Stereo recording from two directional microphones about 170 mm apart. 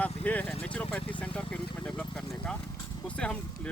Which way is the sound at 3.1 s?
5° left (ahead or behind).